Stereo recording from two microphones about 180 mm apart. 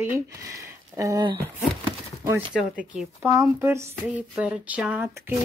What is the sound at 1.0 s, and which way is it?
Speech, 20° right (ahead or behind).